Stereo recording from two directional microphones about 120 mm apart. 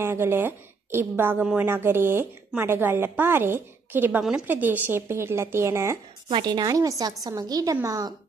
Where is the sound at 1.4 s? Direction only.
5° right (ahead or behind).